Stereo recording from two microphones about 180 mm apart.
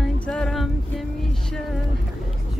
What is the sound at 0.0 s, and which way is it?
Music, 5° left (ahead or behind).